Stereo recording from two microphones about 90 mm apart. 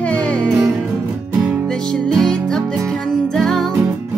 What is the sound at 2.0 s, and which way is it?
Music, 5° left (ahead or behind).